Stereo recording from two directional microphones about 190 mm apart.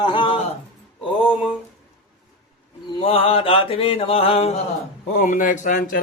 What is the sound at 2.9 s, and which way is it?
Mantra, 30° left (ahead or behind).